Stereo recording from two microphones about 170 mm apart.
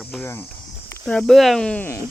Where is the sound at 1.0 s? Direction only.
5° left (ahead or behind).